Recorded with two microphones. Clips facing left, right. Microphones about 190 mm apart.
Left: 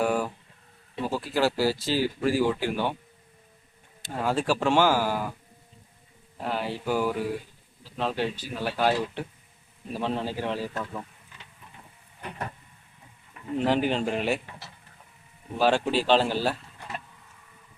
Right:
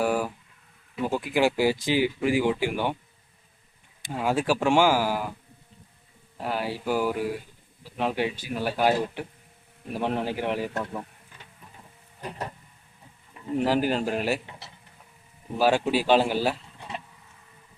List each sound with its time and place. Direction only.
0.0 s a sound: 5° right (ahead or behind)
1.0 s speech: 15° right (ahead or behind)
4.0 s speech: 10° right (ahead or behind)
6.3 s speech: 5° right (ahead or behind)
13.6 s speech: 5° right (ahead or behind)
15.5 s speech: 10° right (ahead or behind)